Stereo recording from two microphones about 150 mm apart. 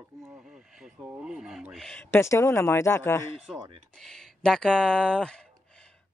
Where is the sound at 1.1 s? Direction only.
5° right (ahead or behind).